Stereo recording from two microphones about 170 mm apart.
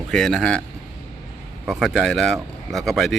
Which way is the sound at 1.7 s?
Centre (ahead or behind).